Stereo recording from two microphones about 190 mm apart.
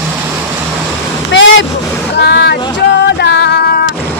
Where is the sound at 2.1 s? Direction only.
60° left (ahead or behind).